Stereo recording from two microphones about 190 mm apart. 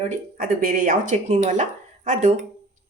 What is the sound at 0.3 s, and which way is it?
Speech, 45° right (ahead or behind).